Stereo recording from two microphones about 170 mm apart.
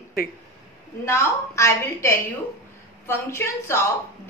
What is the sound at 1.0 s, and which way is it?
A woman's voice, 15° left (ahead or behind).